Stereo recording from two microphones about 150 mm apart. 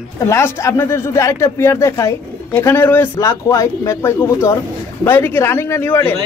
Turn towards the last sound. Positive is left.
turn(degrees=15)  # may be behind; listen again after turning